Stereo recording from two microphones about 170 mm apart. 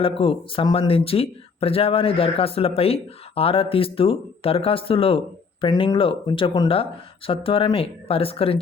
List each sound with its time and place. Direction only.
0.0 s speech: 30° left (ahead or behind)